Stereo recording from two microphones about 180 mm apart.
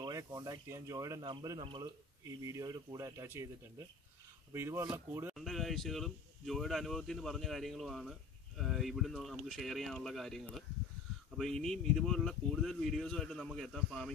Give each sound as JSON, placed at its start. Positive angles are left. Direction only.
{"t": 0.0, "sound": "speech", "side_deg": -20}
{"t": 4.5, "sound": "speech", "side_deg": -15}
{"t": 5.3, "sound": "speech", "side_deg": 0}